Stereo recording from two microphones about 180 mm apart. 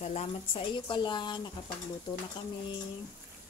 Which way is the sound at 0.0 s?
40° left (ahead or behind).